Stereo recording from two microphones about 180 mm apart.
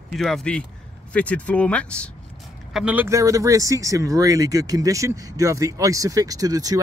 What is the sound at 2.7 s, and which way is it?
Speech, 5° right (ahead or behind).